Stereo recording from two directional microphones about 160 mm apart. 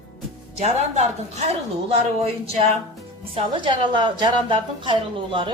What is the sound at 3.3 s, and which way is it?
A woman's voice, 30° right (ahead or behind).